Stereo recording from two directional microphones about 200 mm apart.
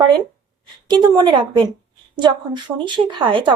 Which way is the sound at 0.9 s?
20° right (ahead or behind).